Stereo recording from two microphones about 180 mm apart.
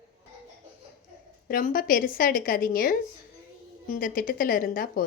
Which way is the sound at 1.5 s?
50° left (ahead or behind).